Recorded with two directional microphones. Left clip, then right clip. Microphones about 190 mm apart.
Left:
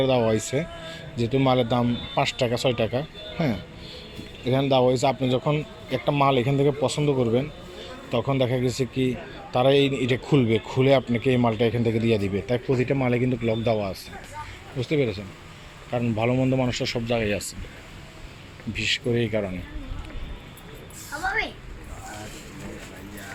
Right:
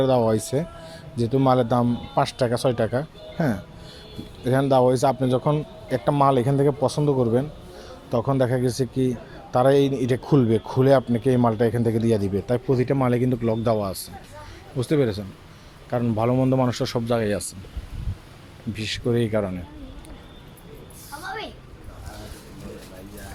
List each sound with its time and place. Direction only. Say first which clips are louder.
0.0 s speech: right 2 dB; 20° right (ahead or behind)
3.3 s speech: right 2 dB; centre (ahead or behind)
4.4 s speech: right 2 dB; 20° right (ahead or behind)
18.7 s speech: left 1 dB; 20° right (ahead or behind)